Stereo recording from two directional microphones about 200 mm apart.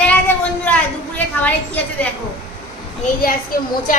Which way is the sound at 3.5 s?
45° left (ahead or behind).